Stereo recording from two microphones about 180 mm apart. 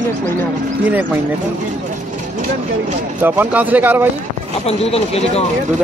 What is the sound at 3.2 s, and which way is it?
Speech, 10° right (ahead or behind).